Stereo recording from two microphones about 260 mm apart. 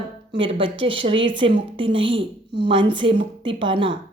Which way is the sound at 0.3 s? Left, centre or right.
Centre.